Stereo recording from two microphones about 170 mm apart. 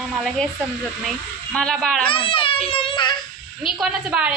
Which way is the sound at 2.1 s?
30° left (ahead or behind).